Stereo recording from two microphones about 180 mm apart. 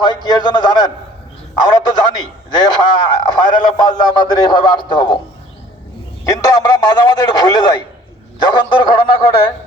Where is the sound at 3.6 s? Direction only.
25° left (ahead or behind).